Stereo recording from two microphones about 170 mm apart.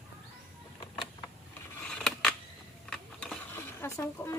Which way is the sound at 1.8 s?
5° left (ahead or behind).